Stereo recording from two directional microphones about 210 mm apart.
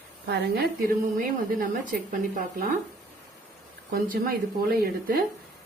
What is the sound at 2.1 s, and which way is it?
Speech, 40° right (ahead or behind).